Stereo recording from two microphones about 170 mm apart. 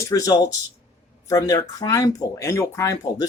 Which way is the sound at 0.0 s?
20° left (ahead or behind).